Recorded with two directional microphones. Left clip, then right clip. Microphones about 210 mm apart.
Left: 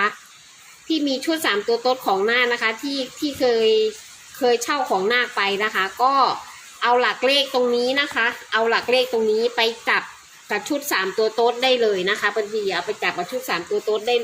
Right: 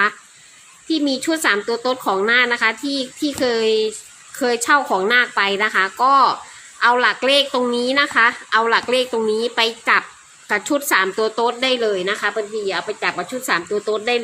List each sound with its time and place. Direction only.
0.9 s a woman's voice: 15° right (ahead or behind)
13.9 s speech: 35° right (ahead or behind)